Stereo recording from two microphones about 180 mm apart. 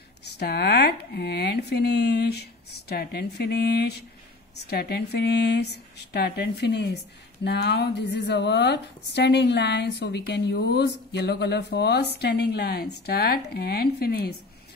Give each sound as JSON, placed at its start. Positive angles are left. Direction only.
{"t": 0.4, "sound": "a woman's voice", "side_deg": 65}